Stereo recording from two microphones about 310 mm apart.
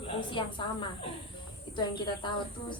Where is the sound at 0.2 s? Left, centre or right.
Centre.